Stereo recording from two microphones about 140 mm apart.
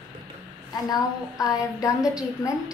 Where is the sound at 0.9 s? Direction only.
25° left (ahead or behind).